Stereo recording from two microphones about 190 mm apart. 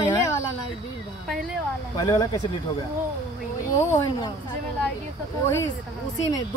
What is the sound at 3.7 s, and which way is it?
Speech, 20° left (ahead or behind).